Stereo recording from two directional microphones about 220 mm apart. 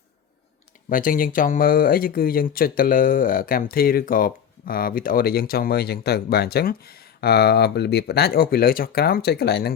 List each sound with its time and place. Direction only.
0.9 s speech: 40° left (ahead or behind)